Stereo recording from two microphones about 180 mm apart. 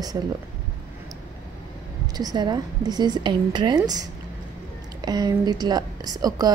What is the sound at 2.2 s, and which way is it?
A woman's voice, 20° right (ahead or behind).